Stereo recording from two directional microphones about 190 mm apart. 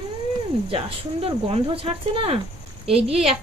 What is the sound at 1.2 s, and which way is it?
A woman's voice, 30° right (ahead or behind).